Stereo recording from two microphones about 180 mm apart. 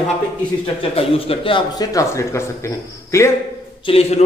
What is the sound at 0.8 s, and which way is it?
Speech, 30° left (ahead or behind).